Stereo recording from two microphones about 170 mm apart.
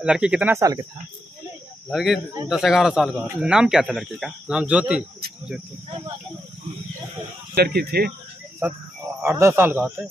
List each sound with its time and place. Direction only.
0.0 s speech: 5° right (ahead or behind); by 0.8 s 20° right (ahead or behind)
1.9 s speech: centre (ahead or behind)
7.5 s speech: 65° right (ahead or behind)
8.6 s speech: 10° right (ahead or behind)